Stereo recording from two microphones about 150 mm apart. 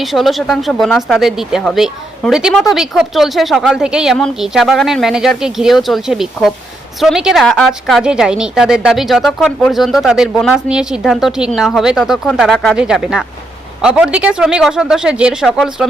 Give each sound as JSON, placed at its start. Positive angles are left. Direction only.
{"t": 0.0, "sound": "speech", "side_deg": 0}